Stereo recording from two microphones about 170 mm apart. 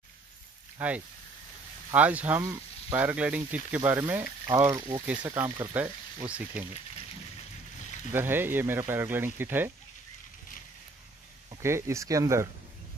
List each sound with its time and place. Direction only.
0.7 s speech: 10° right (ahead or behind)
8.1 s speech: 15° right (ahead or behind)
11.6 s speech: 15° right (ahead or behind)